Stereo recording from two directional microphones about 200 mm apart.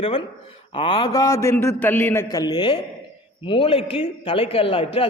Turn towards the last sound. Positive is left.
turn(degrees=25)  # may be behind; listen again after turning